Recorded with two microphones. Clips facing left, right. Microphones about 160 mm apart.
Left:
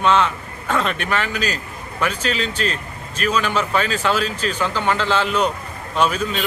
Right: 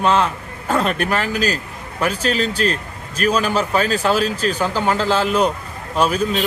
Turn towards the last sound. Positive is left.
turn(degrees=-35)  # may be behind; listen again after turning